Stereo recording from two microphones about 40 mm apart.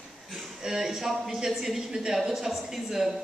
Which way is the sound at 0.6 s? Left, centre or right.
Centre.